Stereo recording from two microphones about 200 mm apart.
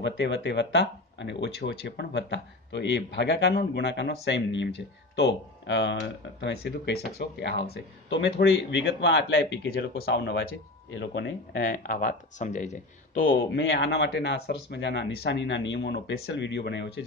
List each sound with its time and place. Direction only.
0.0 s speech: 60° left (ahead or behind); by 13.4 s 40° left (ahead or behind)
13.6 s speech: 65° left (ahead or behind)